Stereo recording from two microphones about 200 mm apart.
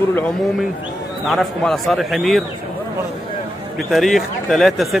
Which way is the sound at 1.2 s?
Centre (ahead or behind).